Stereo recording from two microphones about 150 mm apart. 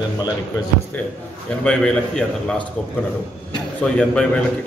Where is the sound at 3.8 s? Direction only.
5° left (ahead or behind).